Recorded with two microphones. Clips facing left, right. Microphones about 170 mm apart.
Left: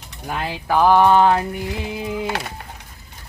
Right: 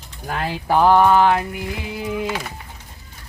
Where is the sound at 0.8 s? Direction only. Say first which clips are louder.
Even; 5° left (ahead or behind).